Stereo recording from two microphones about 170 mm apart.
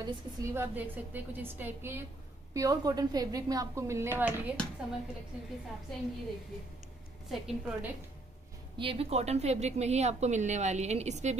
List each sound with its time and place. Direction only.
0.0 s a woman's voice: 15° right (ahead or behind)
5.9 s a woman's voice: centre (ahead or behind)
7.2 s a woman's voice: 5° right (ahead or behind)
8.7 s a woman's voice: 35° right (ahead or behind)